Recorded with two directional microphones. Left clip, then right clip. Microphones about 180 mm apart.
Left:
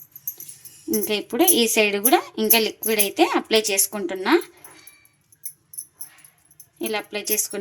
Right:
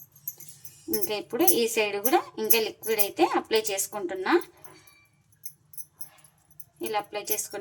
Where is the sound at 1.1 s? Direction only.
35° left (ahead or behind).